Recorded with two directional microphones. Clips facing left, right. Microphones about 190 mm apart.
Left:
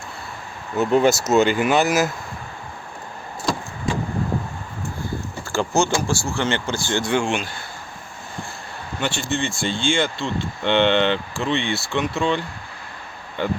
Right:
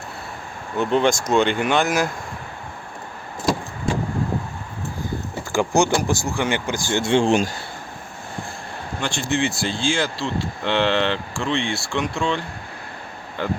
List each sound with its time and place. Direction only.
0.8 s speech: 5° left (ahead or behind)
5.5 s speech: 15° right (ahead or behind)
6.9 s speech: 25° right (ahead or behind)
9.0 s speech: centre (ahead or behind)